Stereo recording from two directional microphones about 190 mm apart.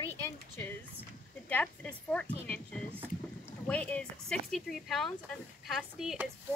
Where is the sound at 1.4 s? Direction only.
10° left (ahead or behind).